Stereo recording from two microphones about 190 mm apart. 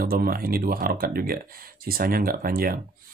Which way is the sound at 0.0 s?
50° right (ahead or behind).